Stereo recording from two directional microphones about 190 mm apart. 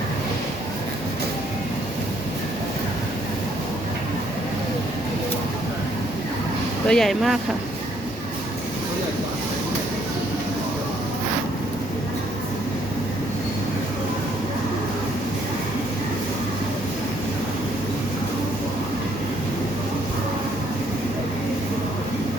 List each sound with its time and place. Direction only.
6.8 s speech: centre (ahead or behind)